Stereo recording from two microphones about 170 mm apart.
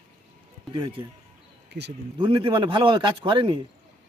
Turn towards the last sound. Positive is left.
turn(degrees=-30)  # may be behind; listen again after turning